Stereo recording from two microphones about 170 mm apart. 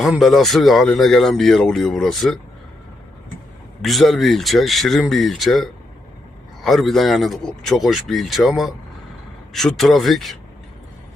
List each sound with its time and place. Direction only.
0.0 s speech: centre (ahead or behind)
3.8 s speech: centre (ahead or behind)